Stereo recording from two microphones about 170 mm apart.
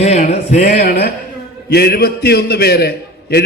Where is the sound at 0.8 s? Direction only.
65° left (ahead or behind).